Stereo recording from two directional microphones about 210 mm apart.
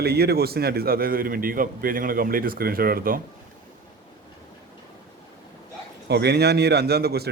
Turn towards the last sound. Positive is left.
turn(degrees=-50)  # may be behind; listen again after turning